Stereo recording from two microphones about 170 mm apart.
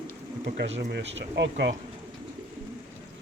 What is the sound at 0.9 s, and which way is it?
Speech, 90° right.